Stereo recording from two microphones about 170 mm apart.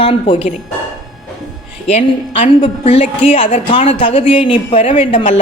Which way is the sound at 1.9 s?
40° left (ahead or behind).